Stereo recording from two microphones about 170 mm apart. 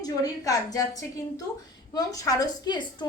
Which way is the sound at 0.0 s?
20° left (ahead or behind).